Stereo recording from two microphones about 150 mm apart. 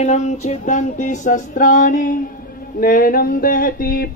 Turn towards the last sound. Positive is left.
turn(degrees=75)  # may be behind; listen again after turning